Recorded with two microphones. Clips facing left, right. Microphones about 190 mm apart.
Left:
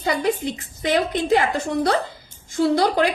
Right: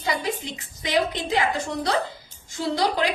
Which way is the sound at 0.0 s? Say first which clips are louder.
Left 6 dB; 55° left (ahead or behind).